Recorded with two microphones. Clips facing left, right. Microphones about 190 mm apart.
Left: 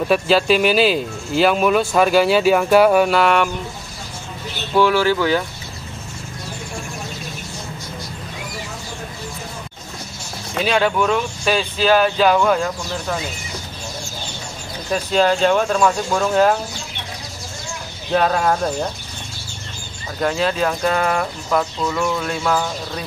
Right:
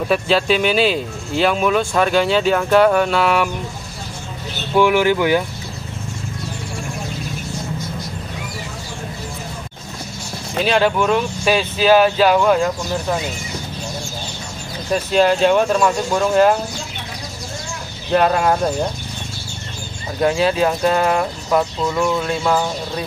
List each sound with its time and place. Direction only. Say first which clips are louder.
0.1 s speech: left 1 dB; centre (ahead or behind)
4.7 s speech: right 1 dB; 15° right (ahead or behind)
10.6 s speech: right 1 dB; centre (ahead or behind)
15.0 s speech: right 2 dB; 5° right (ahead or behind)
18.1 s speech: right 2 dB; 5° right (ahead or behind)
20.2 s speech: right 3 dB; 5° right (ahead or behind)